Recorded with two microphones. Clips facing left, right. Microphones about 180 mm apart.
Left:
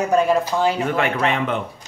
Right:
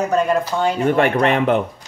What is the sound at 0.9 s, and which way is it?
Speech, 50° right (ahead or behind).